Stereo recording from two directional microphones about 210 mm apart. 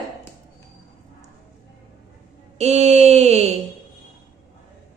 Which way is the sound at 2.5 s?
30° right (ahead or behind).